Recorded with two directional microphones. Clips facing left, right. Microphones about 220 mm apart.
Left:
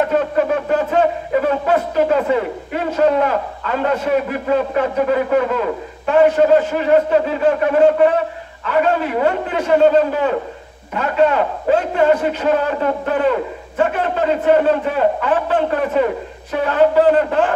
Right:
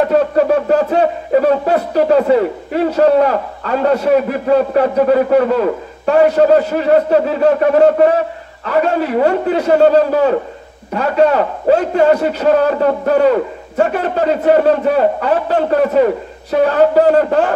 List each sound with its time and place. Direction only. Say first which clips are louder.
0.1 s speech: right 5 dB; 40° right (ahead or behind)